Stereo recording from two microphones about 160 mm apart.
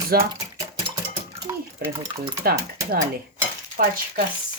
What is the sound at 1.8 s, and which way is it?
Stir, 70° right (ahead or behind).